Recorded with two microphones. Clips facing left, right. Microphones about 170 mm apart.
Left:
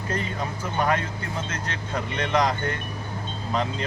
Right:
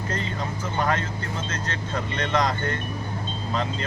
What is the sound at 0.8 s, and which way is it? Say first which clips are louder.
Speech: left 1 dB; 15° left (ahead or behind).